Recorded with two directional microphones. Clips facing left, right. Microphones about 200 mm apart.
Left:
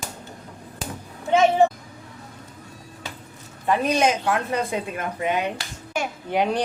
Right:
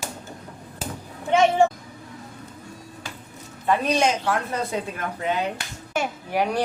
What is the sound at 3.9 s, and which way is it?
Speech, 15° left (ahead or behind).